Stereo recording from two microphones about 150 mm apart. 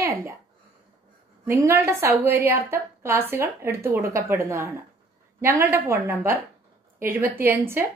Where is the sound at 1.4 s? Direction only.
20° right (ahead or behind).